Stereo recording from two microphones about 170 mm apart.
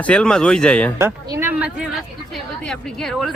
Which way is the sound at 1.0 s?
15° right (ahead or behind).